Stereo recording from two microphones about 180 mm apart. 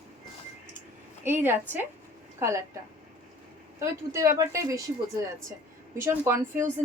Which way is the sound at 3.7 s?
15° right (ahead or behind).